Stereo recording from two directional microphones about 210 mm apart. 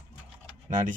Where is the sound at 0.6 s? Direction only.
40° right (ahead or behind).